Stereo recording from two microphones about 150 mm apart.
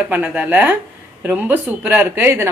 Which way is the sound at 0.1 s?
10° right (ahead or behind).